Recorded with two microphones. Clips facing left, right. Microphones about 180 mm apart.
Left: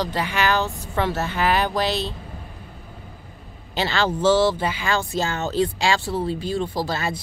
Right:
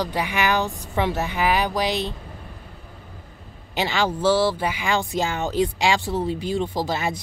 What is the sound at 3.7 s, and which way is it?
Speech, 15° right (ahead or behind).